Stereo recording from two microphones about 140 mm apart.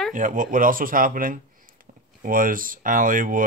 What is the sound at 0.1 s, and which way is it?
Speech, 70° right (ahead or behind).